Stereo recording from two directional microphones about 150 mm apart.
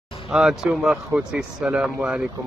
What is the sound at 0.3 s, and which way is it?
Speech, 5° right (ahead or behind).